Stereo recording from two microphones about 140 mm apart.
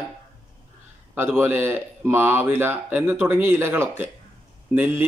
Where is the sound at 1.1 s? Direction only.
15° right (ahead or behind).